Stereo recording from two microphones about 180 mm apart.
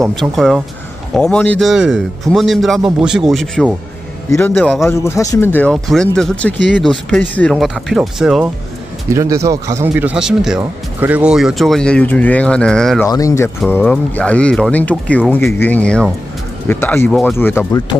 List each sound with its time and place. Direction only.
0.0 s speech: centre (ahead or behind)
4.3 s speech: 10° left (ahead or behind)
9.1 s speech: 15° right (ahead or behind); by 13.0 s 5° left (ahead or behind)
13.0 s speech: 15° left (ahead or behind)